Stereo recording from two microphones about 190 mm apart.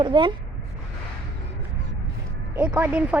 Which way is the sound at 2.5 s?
10° right (ahead or behind).